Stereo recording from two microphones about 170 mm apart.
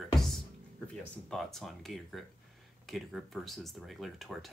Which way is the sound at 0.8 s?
Centre (ahead or behind).